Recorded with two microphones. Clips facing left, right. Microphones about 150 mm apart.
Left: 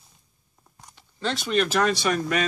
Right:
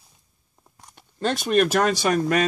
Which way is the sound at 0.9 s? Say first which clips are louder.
Right 4 dB; 50° right (ahead or behind).